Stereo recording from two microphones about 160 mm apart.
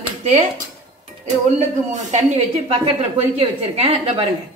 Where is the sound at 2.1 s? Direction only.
45° right (ahead or behind).